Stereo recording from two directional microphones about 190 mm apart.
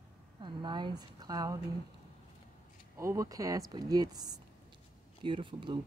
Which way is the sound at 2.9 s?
15° right (ahead or behind).